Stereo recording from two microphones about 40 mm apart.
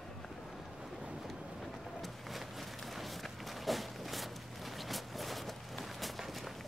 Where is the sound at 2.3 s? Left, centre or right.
Centre.